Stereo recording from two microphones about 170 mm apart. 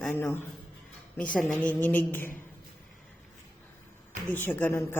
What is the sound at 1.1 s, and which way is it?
A woman's voice, 10° left (ahead or behind).